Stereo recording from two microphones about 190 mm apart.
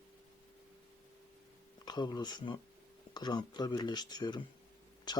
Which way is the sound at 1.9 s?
20° left (ahead or behind).